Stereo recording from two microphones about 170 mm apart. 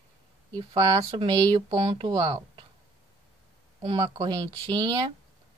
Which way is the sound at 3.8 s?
35° right (ahead or behind).